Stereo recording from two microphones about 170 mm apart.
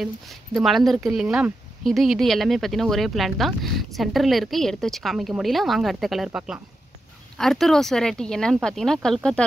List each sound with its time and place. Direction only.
0.0 s speech: centre (ahead or behind)